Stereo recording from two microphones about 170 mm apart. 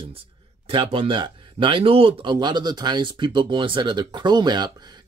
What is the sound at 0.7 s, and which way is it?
Speech, 30° right (ahead or behind).